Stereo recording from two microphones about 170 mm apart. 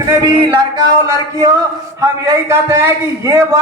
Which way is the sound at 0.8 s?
20° right (ahead or behind).